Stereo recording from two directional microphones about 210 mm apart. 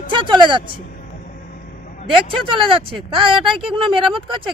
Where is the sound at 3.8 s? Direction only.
25° right (ahead or behind).